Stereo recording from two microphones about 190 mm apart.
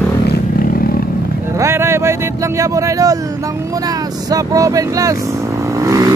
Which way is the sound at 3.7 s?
20° right (ahead or behind).